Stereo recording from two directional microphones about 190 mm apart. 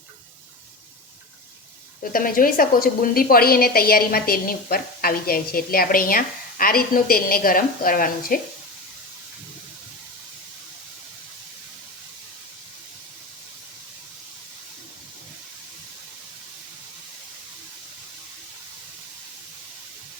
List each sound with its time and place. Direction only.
2.1 s a woman's voice: 50° left (ahead or behind)